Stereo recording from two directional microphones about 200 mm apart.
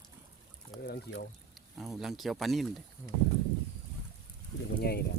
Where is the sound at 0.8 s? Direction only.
50° left (ahead or behind).